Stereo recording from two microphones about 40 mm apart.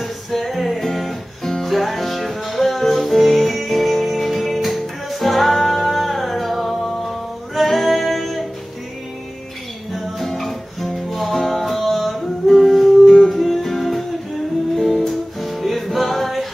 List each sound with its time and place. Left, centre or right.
0.0 s music: centre
10.0 s music: centre
13.0 s music: centre
13.3 s music: centre
14.8 s music: centre
15.0 s music: centre